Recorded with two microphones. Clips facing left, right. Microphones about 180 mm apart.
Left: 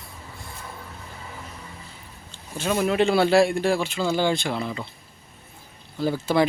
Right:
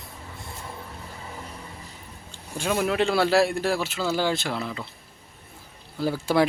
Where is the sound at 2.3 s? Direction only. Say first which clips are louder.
Left 1 dB; 15° right (ahead or behind).